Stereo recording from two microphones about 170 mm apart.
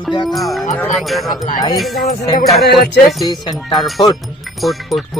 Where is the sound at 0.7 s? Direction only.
10° left (ahead or behind).